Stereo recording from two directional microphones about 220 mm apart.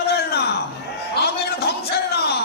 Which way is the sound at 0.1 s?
45° left (ahead or behind).